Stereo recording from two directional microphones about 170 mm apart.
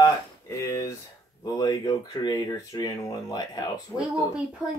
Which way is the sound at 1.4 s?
25° left (ahead or behind).